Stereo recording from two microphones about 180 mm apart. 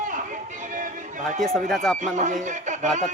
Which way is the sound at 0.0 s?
45° right (ahead or behind).